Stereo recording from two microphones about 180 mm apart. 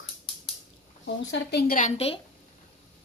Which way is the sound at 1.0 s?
85° left.